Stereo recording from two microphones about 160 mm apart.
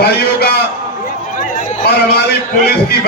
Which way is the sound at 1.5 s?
75° left (ahead or behind).